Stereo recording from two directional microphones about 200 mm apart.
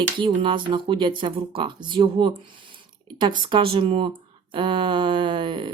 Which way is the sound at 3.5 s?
25° right (ahead or behind).